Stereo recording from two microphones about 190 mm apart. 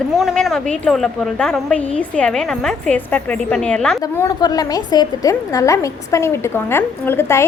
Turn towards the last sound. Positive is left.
turn(degrees=15)  # may be behind; listen again after turning